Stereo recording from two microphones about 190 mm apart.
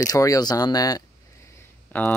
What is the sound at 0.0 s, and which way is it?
Speech, 20° left (ahead or behind).